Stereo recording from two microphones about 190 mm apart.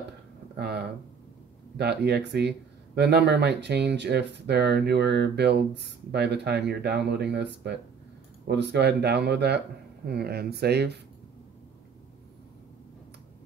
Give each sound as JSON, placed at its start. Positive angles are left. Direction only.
{"t": 0.6, "sound": "speech", "side_deg": -60}